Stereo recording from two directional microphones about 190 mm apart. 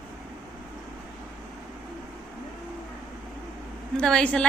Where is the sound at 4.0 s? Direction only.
5° left (ahead or behind).